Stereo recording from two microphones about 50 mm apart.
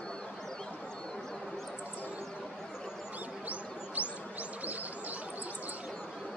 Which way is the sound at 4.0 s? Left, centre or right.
Right.